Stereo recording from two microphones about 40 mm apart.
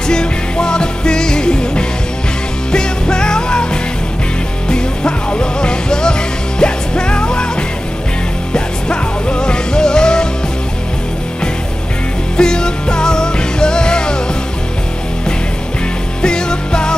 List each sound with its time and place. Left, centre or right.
0.1 s music: centre
4.6 s music: left
8.5 s music: left
12.4 s music: centre
16.2 s music: centre